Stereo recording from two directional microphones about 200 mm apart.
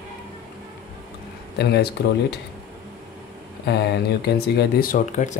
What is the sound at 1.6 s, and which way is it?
Speech, 55° left (ahead or behind).